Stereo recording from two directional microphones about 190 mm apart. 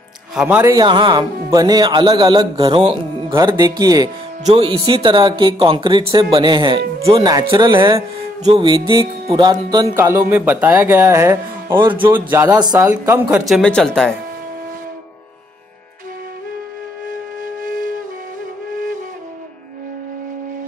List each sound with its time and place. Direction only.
0.3 s speech: 5° right (ahead or behind)
0.7 s speech: 25° right (ahead or behind)
4.5 s speech: 30° right (ahead or behind); by 13.4 s 10° right (ahead or behind)
13.5 s speech: 5° left (ahead or behind)